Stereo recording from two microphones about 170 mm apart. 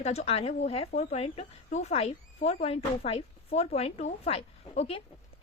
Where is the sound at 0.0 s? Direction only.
40° left (ahead or behind).